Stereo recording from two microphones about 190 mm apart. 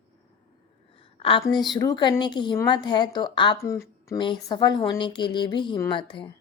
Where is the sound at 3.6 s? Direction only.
15° left (ahead or behind).